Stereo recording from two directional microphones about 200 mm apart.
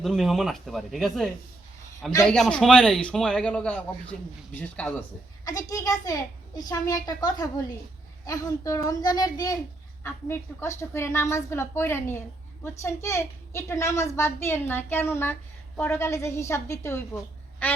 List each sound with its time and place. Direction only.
0.0 s a man's voice: centre (ahead or behind)
5.5 s a woman's voice: 15° left (ahead or behind)
17.6 s quack: 10° left (ahead or behind)